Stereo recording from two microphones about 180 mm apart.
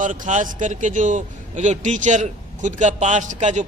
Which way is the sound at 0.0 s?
45° right (ahead or behind).